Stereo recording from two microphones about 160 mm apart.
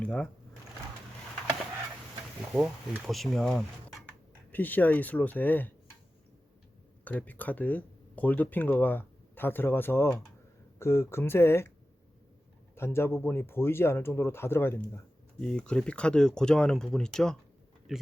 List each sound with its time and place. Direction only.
0.0 s speech: 5° left (ahead or behind)
2.6 s speech: centre (ahead or behind)
7.0 s speech: 10° left (ahead or behind)
12.7 s speech: 15° left (ahead or behind)